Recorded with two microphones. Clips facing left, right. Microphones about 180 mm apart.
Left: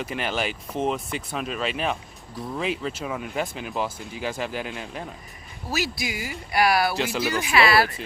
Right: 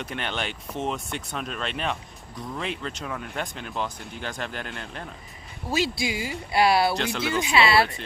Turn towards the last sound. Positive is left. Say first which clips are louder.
# left 1 dB
turn(degrees=-25)  # may be behind; listen again after turning